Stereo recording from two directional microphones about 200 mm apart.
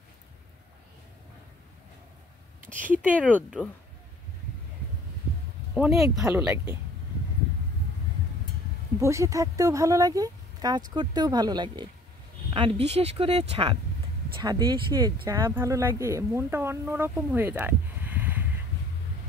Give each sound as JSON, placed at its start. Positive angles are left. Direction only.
{"t": 2.6, "sound": "a sound", "side_deg": -40}
{"t": 2.9, "sound": "speech", "side_deg": -5}
{"t": 5.8, "sound": "speech", "side_deg": 0}
{"t": 9.0, "sound": "speech", "side_deg": -15}